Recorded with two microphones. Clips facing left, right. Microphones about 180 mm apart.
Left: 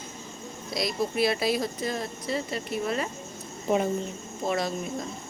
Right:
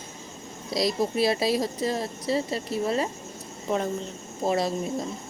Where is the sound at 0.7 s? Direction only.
30° right (ahead or behind).